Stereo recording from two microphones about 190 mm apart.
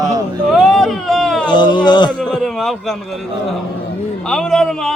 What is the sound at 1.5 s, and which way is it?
Speech, 25° left (ahead or behind).